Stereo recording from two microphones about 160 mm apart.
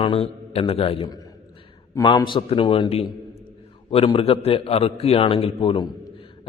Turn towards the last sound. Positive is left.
turn(degrees=35)  # may be behind; listen again after turning